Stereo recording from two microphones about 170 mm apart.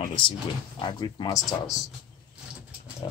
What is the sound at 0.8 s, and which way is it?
Speech, 25° left (ahead or behind).